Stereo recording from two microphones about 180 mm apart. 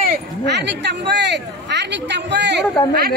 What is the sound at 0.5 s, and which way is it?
Speech, 75° right (ahead or behind).